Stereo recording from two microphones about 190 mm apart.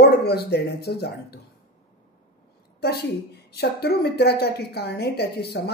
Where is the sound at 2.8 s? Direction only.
60° left (ahead or behind).